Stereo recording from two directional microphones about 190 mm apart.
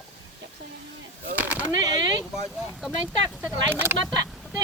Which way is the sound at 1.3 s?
10° right (ahead or behind).